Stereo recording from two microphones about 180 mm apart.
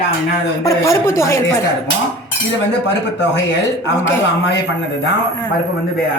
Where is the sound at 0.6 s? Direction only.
15° left (ahead or behind).